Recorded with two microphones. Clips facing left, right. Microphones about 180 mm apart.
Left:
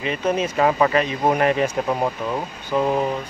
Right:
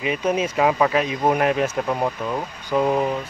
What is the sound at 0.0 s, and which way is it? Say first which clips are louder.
Speech: even; 5° right (ahead or behind).